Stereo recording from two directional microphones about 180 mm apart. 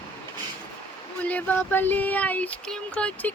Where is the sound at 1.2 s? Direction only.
10° left (ahead or behind).